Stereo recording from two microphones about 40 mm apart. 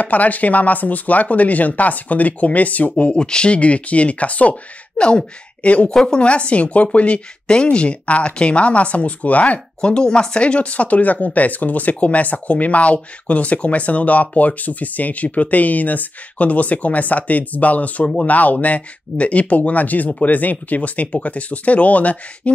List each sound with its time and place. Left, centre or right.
0.0 s speech: left
3.1 s speech: left
9.8 s speech: centre; by 22.5 s left